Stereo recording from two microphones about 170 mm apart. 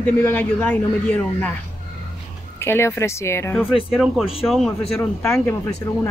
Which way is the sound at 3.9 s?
5° right (ahead or behind).